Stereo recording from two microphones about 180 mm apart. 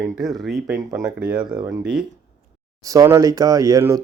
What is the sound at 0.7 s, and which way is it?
Speech, 15° right (ahead or behind).